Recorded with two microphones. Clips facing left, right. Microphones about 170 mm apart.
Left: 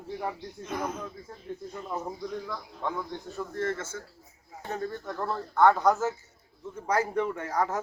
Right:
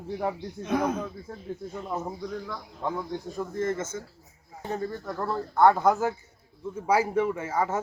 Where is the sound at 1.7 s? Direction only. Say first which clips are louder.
Right 2 dB; 5° right (ahead or behind).